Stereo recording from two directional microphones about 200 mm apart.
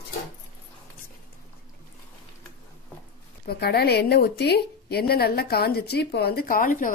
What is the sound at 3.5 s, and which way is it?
A woman's voice, 50° left (ahead or behind).